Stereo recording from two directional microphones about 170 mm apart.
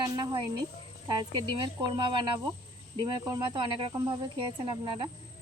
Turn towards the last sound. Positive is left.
turn(degrees=-25)  # may be behind; listen again after turning